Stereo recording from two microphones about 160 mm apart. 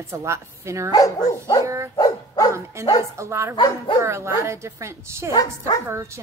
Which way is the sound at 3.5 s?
30° left (ahead or behind).